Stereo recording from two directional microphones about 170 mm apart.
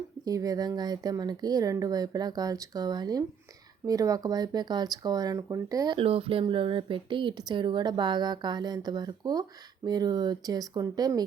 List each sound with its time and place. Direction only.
0.3 s speech: 20° right (ahead or behind)